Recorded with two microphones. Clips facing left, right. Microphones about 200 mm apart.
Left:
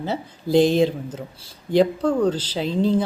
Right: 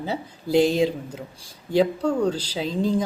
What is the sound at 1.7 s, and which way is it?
Speech, 10° right (ahead or behind).